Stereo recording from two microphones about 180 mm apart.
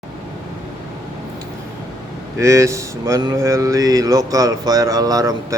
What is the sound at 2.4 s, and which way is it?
Speech, 15° right (ahead or behind).